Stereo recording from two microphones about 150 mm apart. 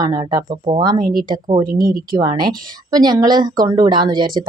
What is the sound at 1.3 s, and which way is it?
Speech, 30° right (ahead or behind).